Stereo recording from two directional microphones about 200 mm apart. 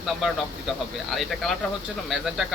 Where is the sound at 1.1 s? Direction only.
Centre (ahead or behind).